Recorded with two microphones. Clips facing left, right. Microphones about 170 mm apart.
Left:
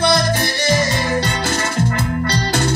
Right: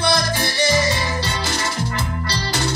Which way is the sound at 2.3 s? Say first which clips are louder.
Left 3 dB; 55° left (ahead or behind).